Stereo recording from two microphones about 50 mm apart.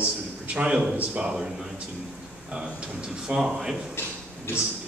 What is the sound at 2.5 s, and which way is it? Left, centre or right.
Speech, centre.